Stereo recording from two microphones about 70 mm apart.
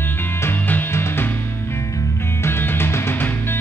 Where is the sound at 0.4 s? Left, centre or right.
Left.